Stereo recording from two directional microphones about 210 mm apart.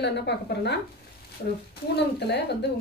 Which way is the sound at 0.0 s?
55° left (ahead or behind).